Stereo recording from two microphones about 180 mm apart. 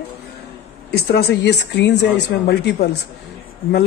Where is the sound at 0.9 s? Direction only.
65° left (ahead or behind).